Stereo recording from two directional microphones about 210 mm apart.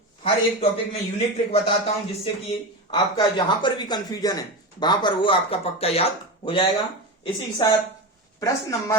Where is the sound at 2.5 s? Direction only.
20° left (ahead or behind).